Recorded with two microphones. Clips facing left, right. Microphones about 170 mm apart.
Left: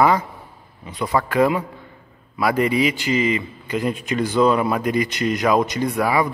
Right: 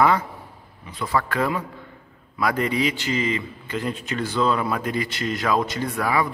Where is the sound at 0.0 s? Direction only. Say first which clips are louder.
Left 2 dB; 10° left (ahead or behind).